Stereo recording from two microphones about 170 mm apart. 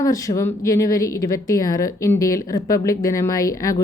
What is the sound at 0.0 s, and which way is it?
A woman's voice, 20° left (ahead or behind).